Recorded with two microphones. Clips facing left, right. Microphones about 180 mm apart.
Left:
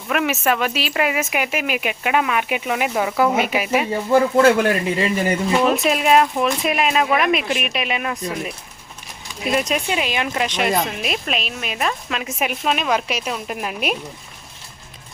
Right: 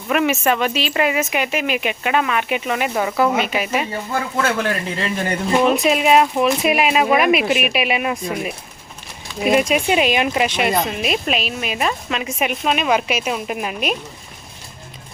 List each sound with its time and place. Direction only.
0.1 s speech: centre (ahead or behind)
4.1 s speech: 25° left (ahead or behind)
4.5 s speech: 15° left (ahead or behind)